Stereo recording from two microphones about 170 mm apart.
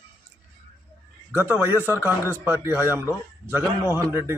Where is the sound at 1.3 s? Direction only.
10° right (ahead or behind).